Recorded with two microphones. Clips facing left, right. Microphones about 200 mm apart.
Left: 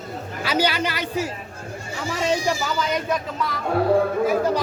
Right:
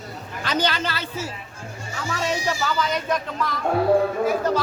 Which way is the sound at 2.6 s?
5° left (ahead or behind).